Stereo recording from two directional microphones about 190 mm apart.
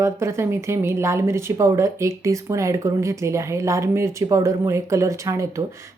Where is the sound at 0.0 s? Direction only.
15° right (ahead or behind).